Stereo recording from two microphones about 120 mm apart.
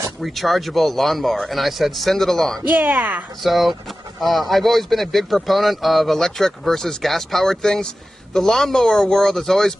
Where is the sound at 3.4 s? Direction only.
Centre (ahead or behind).